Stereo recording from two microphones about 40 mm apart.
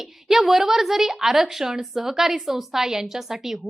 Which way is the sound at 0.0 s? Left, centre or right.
Centre.